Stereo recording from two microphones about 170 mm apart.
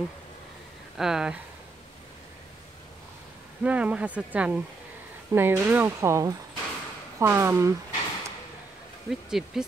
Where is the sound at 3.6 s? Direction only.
5° right (ahead or behind).